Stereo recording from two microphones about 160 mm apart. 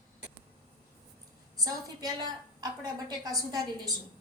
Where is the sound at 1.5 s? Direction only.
25° right (ahead or behind).